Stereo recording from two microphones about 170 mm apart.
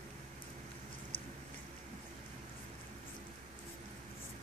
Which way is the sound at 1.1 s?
30° left (ahead or behind).